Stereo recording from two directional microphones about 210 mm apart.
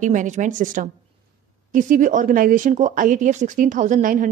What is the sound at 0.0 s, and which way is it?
Speech, 35° right (ahead or behind).